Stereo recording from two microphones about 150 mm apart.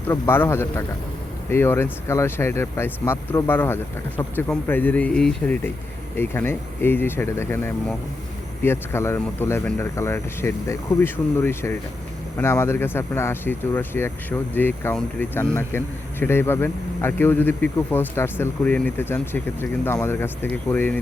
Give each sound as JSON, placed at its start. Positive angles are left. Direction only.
{"t": 0.1, "sound": "speech", "side_deg": 15}